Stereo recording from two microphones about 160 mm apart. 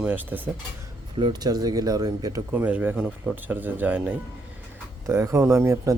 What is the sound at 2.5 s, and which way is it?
Speech, 10° right (ahead or behind).